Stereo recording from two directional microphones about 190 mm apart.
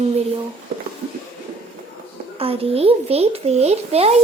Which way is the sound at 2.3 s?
30° right (ahead or behind).